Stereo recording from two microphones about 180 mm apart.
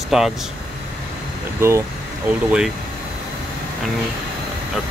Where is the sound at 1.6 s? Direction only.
15° right (ahead or behind).